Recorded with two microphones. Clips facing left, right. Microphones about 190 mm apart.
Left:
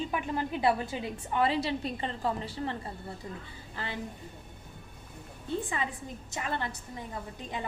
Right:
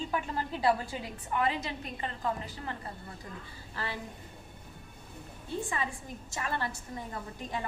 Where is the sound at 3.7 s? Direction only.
20° left (ahead or behind).